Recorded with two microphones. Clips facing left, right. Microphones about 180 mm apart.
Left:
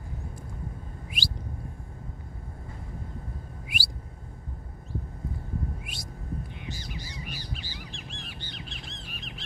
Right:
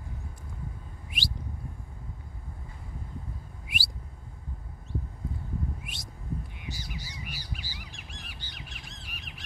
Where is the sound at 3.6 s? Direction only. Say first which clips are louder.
Even; centre (ahead or behind).